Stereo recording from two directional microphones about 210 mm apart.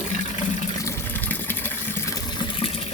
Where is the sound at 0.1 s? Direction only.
35° left (ahead or behind).